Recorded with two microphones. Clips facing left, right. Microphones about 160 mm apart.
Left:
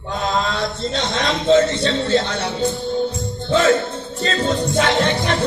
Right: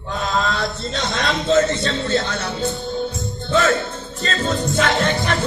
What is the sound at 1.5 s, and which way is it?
A man's voice, 30° left (ahead or behind).